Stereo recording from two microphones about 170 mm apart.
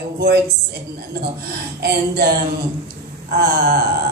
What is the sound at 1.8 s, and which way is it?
Speech, 70° right (ahead or behind).